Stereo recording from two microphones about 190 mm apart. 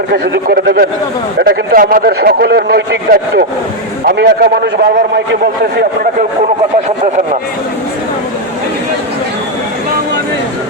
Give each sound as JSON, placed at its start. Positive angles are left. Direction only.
{"t": 0.1, "sound": "a man's voice", "side_deg": -50}